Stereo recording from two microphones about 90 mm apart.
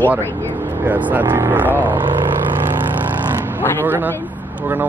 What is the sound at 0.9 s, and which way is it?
Speech, 20° right (ahead or behind).